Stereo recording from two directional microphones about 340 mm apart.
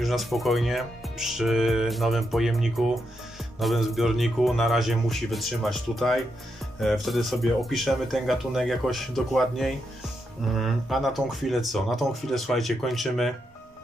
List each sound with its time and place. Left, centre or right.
0.0 s speech: centre